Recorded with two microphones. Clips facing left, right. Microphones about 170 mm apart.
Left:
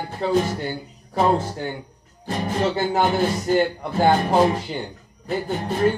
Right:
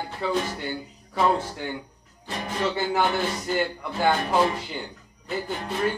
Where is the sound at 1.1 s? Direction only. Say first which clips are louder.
Left 3 dB; 35° left (ahead or behind).